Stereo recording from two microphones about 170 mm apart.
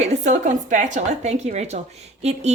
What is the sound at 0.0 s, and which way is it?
A woman's voice, 45° right (ahead or behind).